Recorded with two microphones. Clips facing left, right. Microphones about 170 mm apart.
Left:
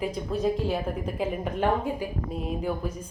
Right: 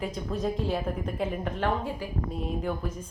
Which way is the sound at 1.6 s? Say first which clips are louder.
Left 4 dB; 15° left (ahead or behind).